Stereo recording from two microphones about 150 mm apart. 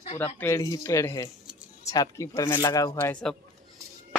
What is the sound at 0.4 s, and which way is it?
Speech, 20° left (ahead or behind).